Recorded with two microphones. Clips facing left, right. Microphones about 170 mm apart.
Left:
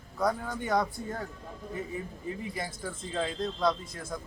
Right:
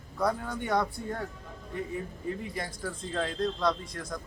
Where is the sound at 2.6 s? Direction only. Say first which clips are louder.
Right 1 dB; 5° left (ahead or behind).